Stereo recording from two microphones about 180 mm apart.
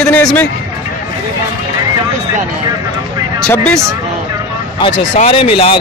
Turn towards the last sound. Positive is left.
turn(degrees=30)  # may be behind; listen again after turning